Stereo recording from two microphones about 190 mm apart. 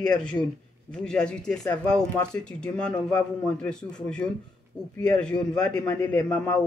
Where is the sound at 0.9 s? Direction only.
5° left (ahead or behind).